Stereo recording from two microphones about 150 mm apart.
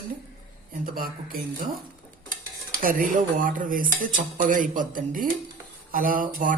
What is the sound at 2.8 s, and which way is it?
Dishes, 65° right (ahead or behind).